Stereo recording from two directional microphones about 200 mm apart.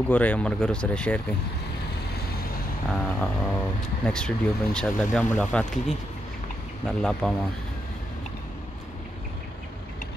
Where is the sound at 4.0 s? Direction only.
5° left (ahead or behind).